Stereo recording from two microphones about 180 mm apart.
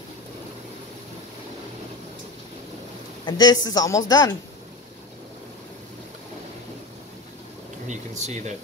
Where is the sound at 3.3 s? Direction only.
20° left (ahead or behind).